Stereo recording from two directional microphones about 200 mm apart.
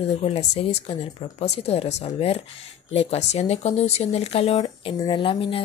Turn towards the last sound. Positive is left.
turn(degrees=25)  # may be behind; listen again after turning